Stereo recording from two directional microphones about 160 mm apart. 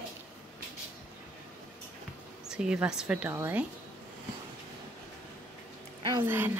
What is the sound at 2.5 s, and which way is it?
Speech, 5° right (ahead or behind).